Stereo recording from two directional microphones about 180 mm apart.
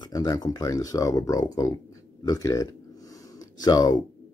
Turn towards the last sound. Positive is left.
turn(degrees=20)  # may be behind; listen again after turning